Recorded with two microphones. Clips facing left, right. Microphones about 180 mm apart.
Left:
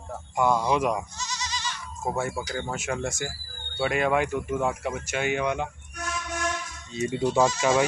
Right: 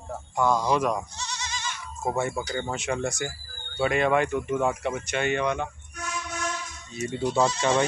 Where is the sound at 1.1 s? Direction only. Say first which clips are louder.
Left 1 dB; 60° right (ahead or behind).